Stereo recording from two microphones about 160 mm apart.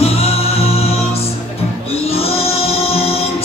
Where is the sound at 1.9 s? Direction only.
40° left (ahead or behind).